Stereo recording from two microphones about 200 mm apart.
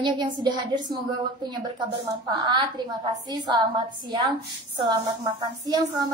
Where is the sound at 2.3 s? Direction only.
20° right (ahead or behind).